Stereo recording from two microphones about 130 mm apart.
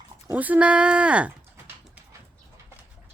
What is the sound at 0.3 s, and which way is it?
Speech, 10° right (ahead or behind).